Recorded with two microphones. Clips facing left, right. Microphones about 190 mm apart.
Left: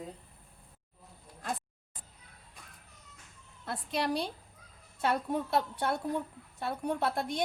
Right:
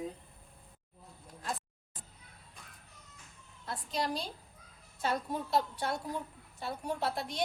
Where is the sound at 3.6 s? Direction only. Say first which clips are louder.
Left 3 dB; 65° left (ahead or behind).